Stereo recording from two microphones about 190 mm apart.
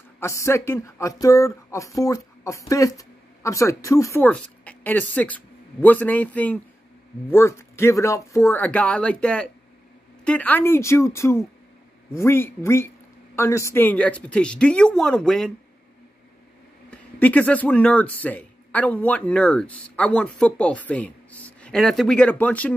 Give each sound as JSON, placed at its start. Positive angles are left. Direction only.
{"t": 0.2, "sound": "speech", "side_deg": 15}
{"t": 16.9, "sound": "speech", "side_deg": 5}